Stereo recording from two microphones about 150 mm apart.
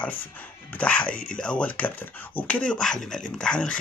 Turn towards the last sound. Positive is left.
turn(degrees=5)  # may be behind; listen again after turning